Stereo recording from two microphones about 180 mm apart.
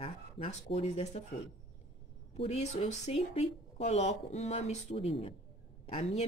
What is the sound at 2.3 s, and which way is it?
Speech, 35° left (ahead or behind).